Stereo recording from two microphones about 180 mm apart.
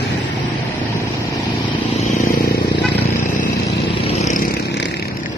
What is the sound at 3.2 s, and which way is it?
Vehicle, 45° left (ahead or behind).